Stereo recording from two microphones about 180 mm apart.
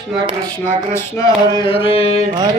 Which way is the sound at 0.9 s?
20° left (ahead or behind).